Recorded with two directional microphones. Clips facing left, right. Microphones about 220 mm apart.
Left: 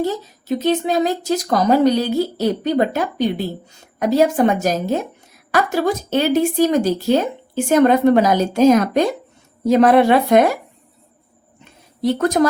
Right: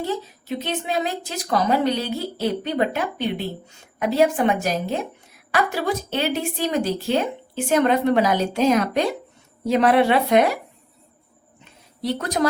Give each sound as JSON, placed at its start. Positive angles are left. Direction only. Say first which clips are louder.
{"t": 0.0, "sound": "a woman's voice", "louder": "left 5 dB", "side_deg": 40}
{"t": 12.0, "sound": "a woman's voice", "louder": "left 7 dB", "side_deg": 45}